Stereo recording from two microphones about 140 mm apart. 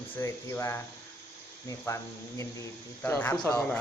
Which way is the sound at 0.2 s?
20° left (ahead or behind).